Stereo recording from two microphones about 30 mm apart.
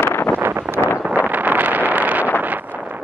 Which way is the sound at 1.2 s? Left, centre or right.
Right.